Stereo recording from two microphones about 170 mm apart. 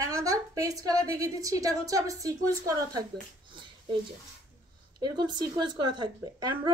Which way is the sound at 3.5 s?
30° right (ahead or behind).